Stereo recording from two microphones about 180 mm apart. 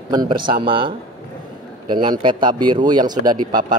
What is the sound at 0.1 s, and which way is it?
Speech, 25° right (ahead or behind).